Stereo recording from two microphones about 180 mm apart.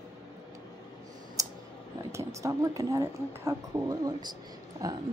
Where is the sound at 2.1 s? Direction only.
20° right (ahead or behind).